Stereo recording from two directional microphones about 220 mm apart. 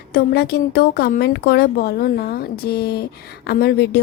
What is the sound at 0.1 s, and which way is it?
A woman's voice, 45° left (ahead or behind).